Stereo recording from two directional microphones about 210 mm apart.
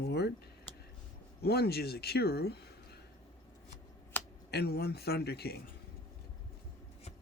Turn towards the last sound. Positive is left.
turn(degrees=50)  # may be behind; listen again after turning